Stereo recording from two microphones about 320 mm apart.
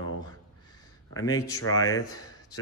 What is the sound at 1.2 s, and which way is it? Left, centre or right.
Speech, left.